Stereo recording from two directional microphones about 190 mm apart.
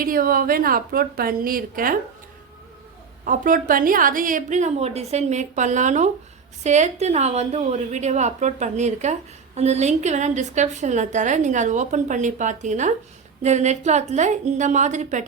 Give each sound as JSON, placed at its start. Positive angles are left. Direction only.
{"t": 0.0, "sound": "a woman's voice", "side_deg": -50}
{"t": 3.2, "sound": "a woman's voice", "side_deg": -45}